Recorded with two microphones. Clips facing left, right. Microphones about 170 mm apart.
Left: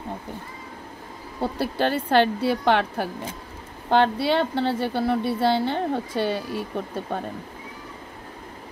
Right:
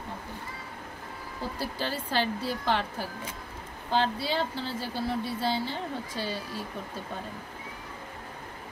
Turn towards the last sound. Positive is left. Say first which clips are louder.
# left 8 dB
turn(degrees=70)  # may be behind; listen again after turning